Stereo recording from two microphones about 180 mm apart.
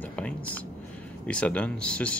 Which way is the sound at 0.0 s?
5° left (ahead or behind).